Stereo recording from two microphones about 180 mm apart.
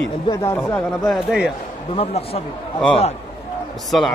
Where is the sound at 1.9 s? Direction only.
35° left (ahead or behind).